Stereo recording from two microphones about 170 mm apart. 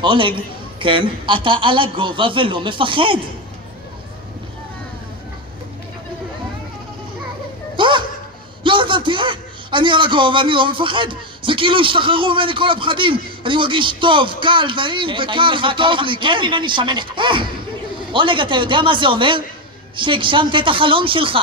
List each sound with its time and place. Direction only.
0.0 s a man's voice: 30° right (ahead or behind)
7.7 s children playing: 30° right (ahead or behind)
8.6 s a man's voice: 30° right (ahead or behind)